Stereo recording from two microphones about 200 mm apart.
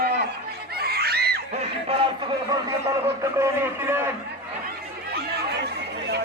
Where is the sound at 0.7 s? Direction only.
50° right (ahead or behind).